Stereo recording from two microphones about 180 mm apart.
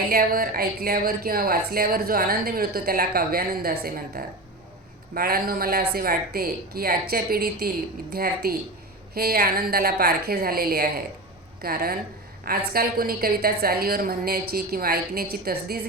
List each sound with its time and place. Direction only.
0.1 s speech: 55° right (ahead or behind)